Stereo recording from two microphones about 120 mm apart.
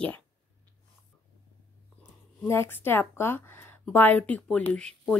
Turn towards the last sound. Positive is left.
turn(degrees=5)  # may be behind; listen again after turning